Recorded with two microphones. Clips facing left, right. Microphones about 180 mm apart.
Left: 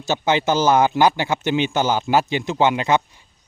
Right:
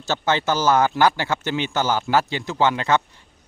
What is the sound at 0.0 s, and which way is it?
Speech, 15° left (ahead or behind).